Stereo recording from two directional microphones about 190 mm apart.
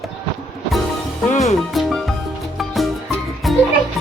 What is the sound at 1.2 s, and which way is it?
Music, 40° left (ahead or behind).